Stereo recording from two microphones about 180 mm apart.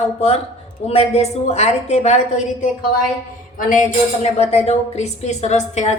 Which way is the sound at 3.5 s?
45° left (ahead or behind).